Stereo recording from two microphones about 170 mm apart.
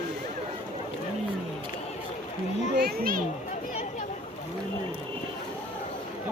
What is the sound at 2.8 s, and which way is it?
Children playing, 60° right (ahead or behind).